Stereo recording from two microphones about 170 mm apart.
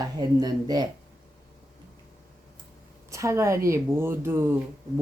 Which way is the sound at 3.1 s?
15° right (ahead or behind).